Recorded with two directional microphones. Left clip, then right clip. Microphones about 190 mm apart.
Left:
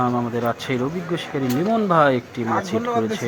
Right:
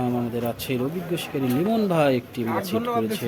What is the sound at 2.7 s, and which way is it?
Speech, 20° left (ahead or behind).